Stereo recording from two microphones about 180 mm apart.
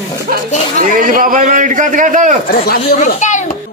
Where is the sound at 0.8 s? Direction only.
50° right (ahead or behind).